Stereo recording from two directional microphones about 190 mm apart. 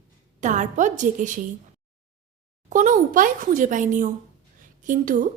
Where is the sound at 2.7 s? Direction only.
45° right (ahead or behind).